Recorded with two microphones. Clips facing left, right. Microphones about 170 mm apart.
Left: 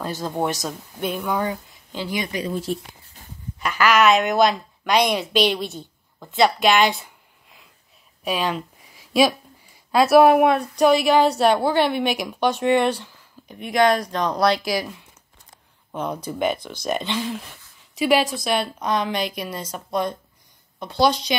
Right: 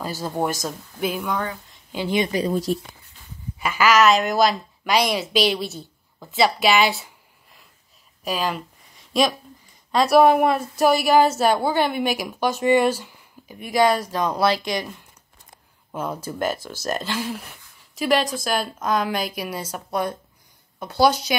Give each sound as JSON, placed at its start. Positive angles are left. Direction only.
{"t": 0.0, "sound": "speech", "side_deg": -5}
{"t": 2.0, "sound": "speech", "side_deg": -25}
{"t": 2.4, "sound": "speech", "side_deg": -40}
{"t": 3.5, "sound": "speech", "side_deg": -10}
{"t": 8.2, "sound": "a sound", "side_deg": 0}
{"t": 9.8, "sound": "speech", "side_deg": 5}